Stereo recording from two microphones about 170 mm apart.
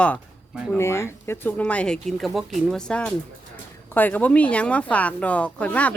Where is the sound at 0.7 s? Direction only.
15° left (ahead or behind).